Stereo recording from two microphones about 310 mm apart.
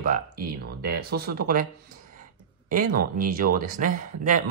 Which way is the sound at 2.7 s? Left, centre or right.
Right.